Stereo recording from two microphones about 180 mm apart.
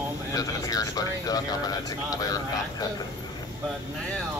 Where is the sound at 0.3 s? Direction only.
20° left (ahead or behind).